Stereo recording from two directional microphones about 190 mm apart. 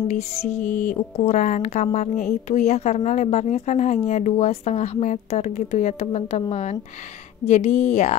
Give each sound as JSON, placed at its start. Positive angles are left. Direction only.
{"t": 0.7, "sound": "a woman's voice", "side_deg": 40}